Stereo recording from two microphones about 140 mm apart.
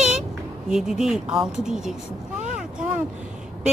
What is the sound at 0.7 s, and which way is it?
Speech, 5° right (ahead or behind).